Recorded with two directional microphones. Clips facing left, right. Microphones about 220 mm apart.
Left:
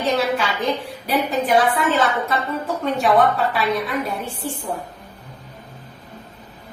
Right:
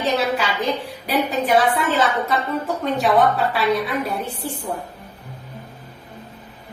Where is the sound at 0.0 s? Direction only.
Centre (ahead or behind).